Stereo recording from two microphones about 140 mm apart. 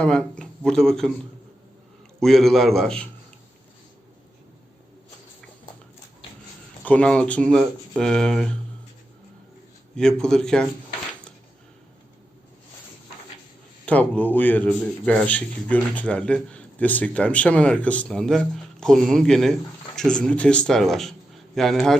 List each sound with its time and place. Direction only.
0.0 s speech: 5° left (ahead or behind)
2.2 s speech: 5° left (ahead or behind)
6.8 s speech: 10° left (ahead or behind)
9.9 s speech: 5° left (ahead or behind)
13.8 s a man's voice: 10° left (ahead or behind)